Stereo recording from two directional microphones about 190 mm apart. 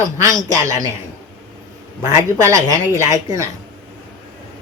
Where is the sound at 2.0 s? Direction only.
15° right (ahead or behind).